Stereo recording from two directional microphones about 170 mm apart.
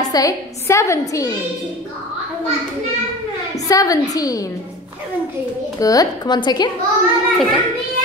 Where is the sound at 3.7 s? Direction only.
20° left (ahead or behind).